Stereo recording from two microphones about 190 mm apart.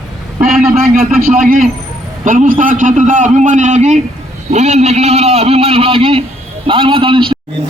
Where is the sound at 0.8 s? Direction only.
50° right (ahead or behind).